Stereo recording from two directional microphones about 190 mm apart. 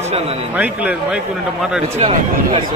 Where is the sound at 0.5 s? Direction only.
5° right (ahead or behind).